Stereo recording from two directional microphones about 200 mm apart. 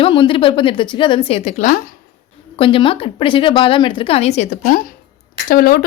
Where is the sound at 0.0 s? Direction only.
25° left (ahead or behind).